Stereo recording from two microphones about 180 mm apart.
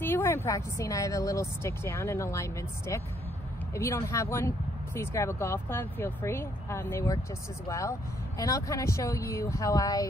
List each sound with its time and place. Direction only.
0.0 s speech: 10° left (ahead or behind)